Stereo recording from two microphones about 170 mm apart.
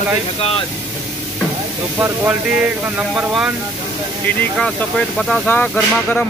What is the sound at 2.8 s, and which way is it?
Speech, 5° right (ahead or behind).